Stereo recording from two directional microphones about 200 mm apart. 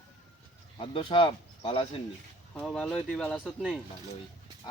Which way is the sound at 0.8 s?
25° left (ahead or behind).